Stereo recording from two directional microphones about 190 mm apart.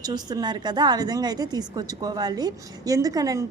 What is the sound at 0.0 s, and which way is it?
A woman's voice, 20° right (ahead or behind).